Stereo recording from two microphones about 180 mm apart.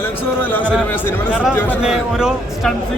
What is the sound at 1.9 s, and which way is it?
Speech, centre (ahead or behind).